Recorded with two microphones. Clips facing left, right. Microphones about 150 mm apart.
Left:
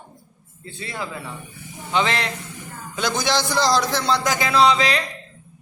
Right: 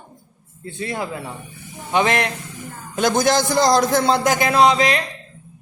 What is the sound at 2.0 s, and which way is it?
A man's voice, 55° right (ahead or behind).